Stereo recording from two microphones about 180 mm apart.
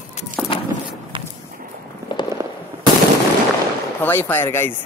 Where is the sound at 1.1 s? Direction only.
25° right (ahead or behind).